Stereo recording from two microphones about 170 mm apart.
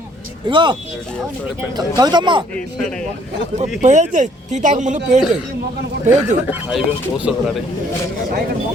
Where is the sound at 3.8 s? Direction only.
45° right (ahead or behind).